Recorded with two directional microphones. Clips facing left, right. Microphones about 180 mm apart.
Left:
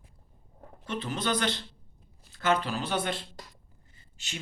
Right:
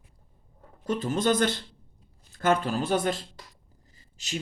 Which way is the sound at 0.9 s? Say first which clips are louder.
Right 6 dB; 45° right (ahead or behind).